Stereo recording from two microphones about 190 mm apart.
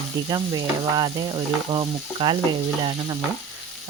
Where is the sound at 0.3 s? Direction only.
20° right (ahead or behind).